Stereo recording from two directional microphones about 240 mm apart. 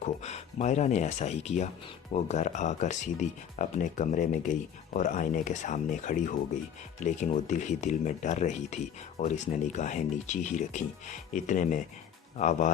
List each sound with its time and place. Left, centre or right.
0.0 s speech: left